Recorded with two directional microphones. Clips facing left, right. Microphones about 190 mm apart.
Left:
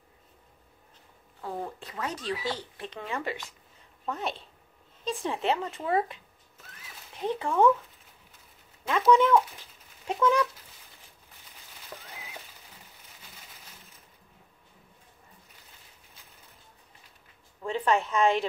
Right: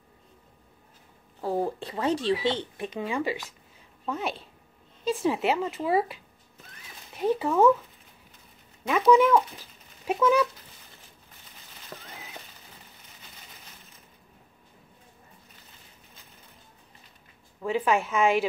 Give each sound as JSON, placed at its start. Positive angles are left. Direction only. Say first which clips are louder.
{"t": 1.4, "sound": "speech", "louder": "right 8 dB", "side_deg": -30}
{"t": 4.0, "sound": "speech", "louder": "right 2 dB", "side_deg": 0}
{"t": 7.2, "sound": "speech", "louder": "right 3 dB", "side_deg": -10}
{"t": 9.0, "sound": "speech", "louder": "right 2 dB", "side_deg": -5}
{"t": 11.9, "sound": "a sound", "louder": "right 1 dB", "side_deg": 0}
{"t": 17.6, "sound": "speech", "louder": "right 2 dB", "side_deg": -5}